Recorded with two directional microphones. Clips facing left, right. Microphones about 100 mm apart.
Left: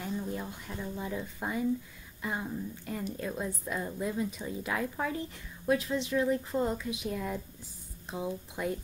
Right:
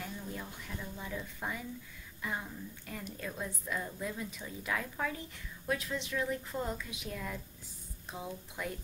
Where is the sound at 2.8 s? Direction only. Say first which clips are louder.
Left 4 dB; 30° left (ahead or behind).